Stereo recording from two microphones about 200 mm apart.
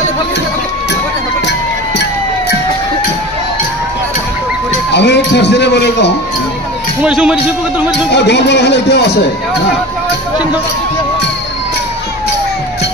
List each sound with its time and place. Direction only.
4.9 s a man's voice: 60° left (ahead or behind)
7.0 s a man's voice: 5° right (ahead or behind)
8.1 s a man's voice: 60° left (ahead or behind)